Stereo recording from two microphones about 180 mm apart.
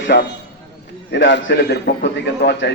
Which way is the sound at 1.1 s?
75° left (ahead or behind).